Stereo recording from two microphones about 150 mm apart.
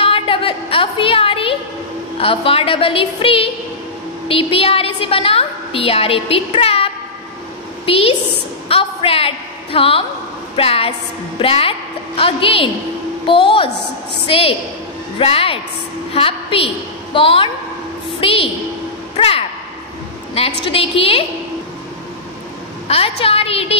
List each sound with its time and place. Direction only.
0.0 s a sound: 35° left (ahead or behind)
2.1 s a woman's voice: 40° left (ahead or behind)
20.6 s a woman's voice: 40° left (ahead or behind)
22.8 s a woman's voice: 40° left (ahead or behind)